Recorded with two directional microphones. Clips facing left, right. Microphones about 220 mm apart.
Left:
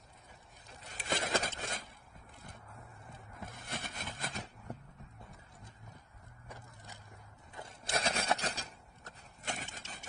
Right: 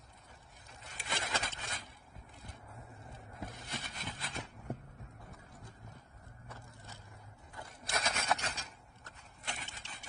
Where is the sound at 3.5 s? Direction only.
55° left (ahead or behind).